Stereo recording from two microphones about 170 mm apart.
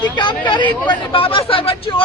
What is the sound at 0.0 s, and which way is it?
Speech, 25° left (ahead or behind).